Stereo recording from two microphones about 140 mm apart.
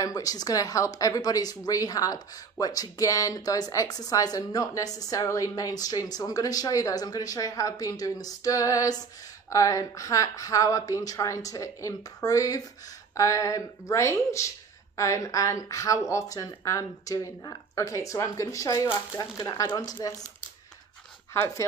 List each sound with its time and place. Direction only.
0.0 s speech: 25° left (ahead or behind)
21.3 s speech: 20° left (ahead or behind)